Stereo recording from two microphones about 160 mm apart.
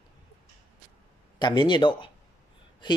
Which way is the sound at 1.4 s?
25° left (ahead or behind).